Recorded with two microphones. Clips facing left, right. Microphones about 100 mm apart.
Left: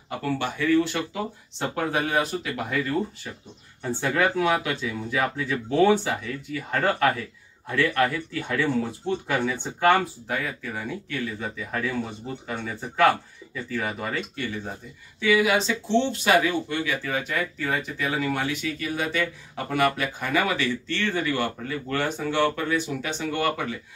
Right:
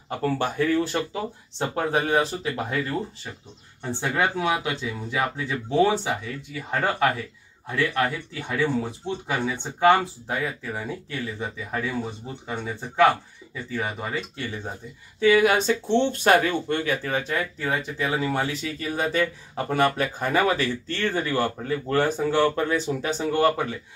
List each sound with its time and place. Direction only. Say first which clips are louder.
0.2 s speech: right 3 dB; 40° right (ahead or behind)
3.9 s speech: left 1 dB; 20° right (ahead or behind)
15.1 s speech: right 3 dB; 40° right (ahead or behind)